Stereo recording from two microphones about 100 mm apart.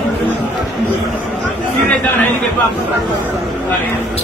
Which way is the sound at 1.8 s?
20° left (ahead or behind).